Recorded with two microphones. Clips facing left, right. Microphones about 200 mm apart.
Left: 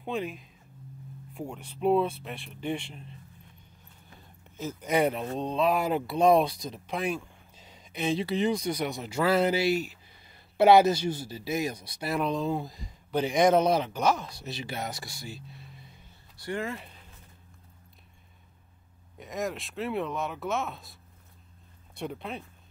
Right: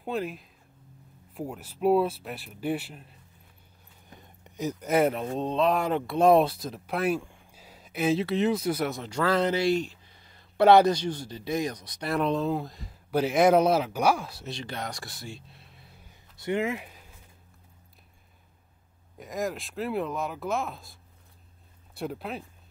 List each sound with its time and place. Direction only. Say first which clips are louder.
0.0 s speech: right 1 dB; centre (ahead or behind)
4.1 s a sound: right 4 dB; 15° right (ahead or behind)
4.8 s speech: right 2 dB; centre (ahead or behind)
16.3 s speech: right 5 dB; 20° right (ahead or behind)
19.1 s speech: right 1 dB; centre (ahead or behind)